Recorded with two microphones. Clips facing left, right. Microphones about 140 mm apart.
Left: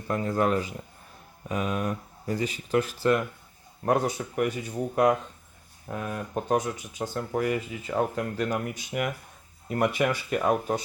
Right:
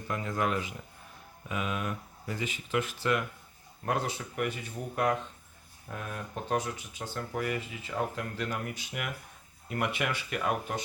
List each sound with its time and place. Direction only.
0.1 s speech: 40° left (ahead or behind)
5.9 s speech: 45° left (ahead or behind)